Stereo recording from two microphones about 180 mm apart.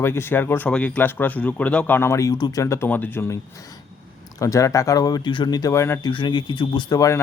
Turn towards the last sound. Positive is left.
turn(degrees=20)  # may be behind; listen again after turning